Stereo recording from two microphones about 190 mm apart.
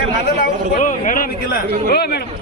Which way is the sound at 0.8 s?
45° left (ahead or behind).